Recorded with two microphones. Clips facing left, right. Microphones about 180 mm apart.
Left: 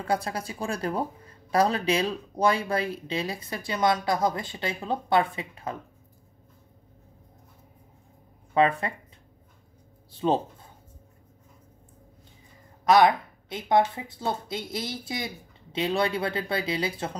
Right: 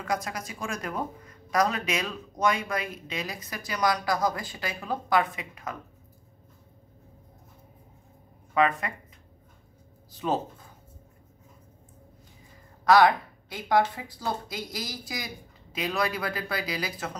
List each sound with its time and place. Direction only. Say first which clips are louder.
0.0 s a woman's voice: left 3 dB; 30° left (ahead or behind)
8.5 s a woman's voice: left 2 dB; 30° left (ahead or behind)
10.1 s speech: left 4 dB; 30° left (ahead or behind)
12.8 s a woman's voice: even; 20° left (ahead or behind)